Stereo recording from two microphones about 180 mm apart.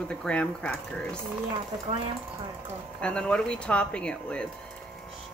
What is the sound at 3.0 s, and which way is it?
Speech, 5° left (ahead or behind).